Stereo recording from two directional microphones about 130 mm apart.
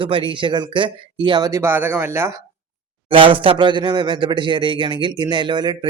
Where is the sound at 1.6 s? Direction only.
15° right (ahead or behind).